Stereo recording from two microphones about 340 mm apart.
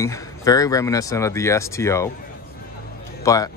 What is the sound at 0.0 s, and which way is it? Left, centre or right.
A man's voice, centre.